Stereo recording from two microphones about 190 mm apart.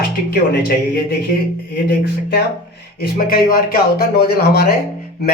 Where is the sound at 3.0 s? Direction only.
50° left (ahead or behind).